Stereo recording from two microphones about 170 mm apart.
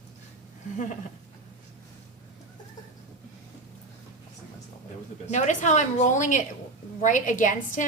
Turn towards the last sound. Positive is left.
turn(degrees=50)  # may be behind; listen again after turning